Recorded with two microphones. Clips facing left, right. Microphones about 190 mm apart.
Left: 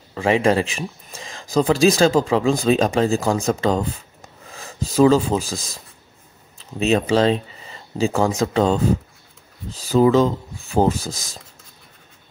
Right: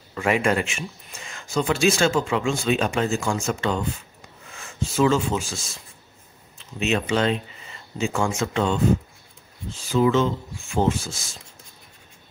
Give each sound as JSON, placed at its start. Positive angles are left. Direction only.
{"t": 0.1, "sound": "speech", "side_deg": 30}